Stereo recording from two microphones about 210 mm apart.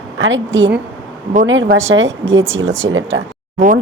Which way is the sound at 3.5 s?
40° right (ahead or behind).